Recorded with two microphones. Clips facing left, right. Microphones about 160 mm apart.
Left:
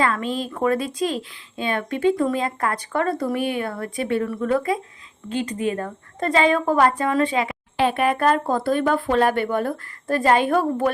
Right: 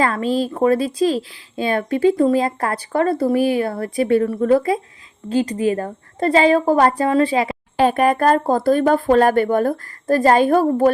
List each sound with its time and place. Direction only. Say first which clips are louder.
0.0 s a woman's voice: right 4 dB; 35° right (ahead or behind)